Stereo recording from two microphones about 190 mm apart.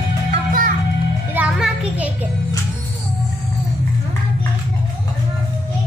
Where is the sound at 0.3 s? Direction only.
45° right (ahead or behind).